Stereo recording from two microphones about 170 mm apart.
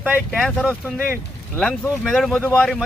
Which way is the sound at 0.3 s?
5° left (ahead or behind).